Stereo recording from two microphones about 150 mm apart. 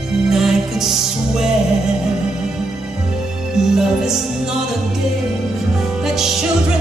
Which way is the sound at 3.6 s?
5° right (ahead or behind).